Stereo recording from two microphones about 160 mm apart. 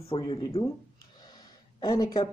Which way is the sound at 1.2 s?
25° left (ahead or behind).